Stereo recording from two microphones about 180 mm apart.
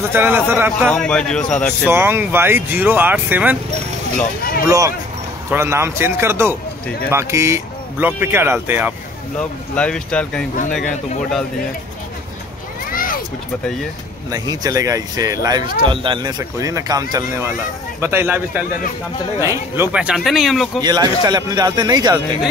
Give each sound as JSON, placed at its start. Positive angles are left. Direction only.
{"t": 0.1, "sound": "speech", "side_deg": -10}
{"t": 0.8, "sound": "speech", "side_deg": 5}
{"t": 1.9, "sound": "speech", "side_deg": -15}
{"t": 4.6, "sound": "speech", "side_deg": -15}
{"t": 9.4, "sound": "speech", "side_deg": 5}
{"t": 12.9, "sound": "a sound", "side_deg": 50}
{"t": 14.3, "sound": "speech", "side_deg": -20}
{"t": 20.8, "sound": "speech", "side_deg": -20}